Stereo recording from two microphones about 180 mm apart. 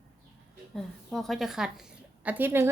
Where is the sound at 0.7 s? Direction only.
Centre (ahead or behind).